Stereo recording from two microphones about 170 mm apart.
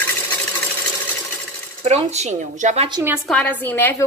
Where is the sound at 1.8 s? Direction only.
40° right (ahead or behind).